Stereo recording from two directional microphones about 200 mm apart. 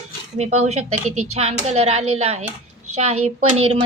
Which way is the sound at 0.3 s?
35° right (ahead or behind).